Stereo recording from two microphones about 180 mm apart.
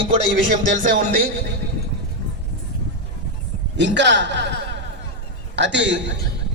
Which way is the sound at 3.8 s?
75° right (ahead or behind).